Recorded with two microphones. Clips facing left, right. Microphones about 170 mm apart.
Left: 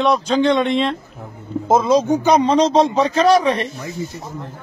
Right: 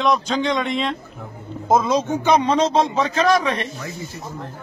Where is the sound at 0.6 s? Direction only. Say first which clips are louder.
Left 5 dB; 30° left (ahead or behind).